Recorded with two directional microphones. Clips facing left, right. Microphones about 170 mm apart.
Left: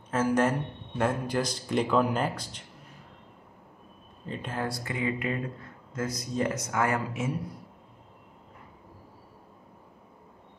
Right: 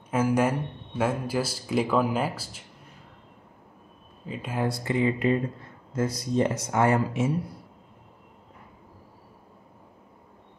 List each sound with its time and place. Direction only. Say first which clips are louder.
0.1 s speech: right 1 dB; 10° right (ahead or behind)
4.3 s speech: right 1 dB; 5° right (ahead or behind)
4.6 s speech: right 7 dB; 25° right (ahead or behind)